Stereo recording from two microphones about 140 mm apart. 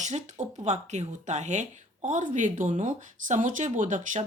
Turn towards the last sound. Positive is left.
turn(degrees=-65)  # may be behind; listen again after turning